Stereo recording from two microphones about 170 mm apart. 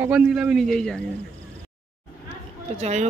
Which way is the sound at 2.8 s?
40° right (ahead or behind).